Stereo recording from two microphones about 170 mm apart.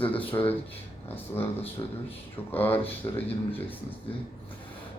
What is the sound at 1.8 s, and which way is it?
Speech, 20° left (ahead or behind).